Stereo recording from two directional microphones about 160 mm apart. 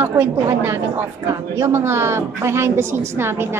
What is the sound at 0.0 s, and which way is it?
A woman's voice, 15° right (ahead or behind).